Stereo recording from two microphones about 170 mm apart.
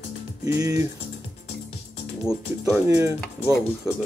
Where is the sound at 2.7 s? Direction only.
15° right (ahead or behind).